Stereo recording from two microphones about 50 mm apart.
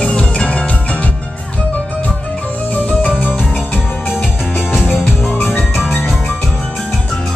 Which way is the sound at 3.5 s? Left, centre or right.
Left.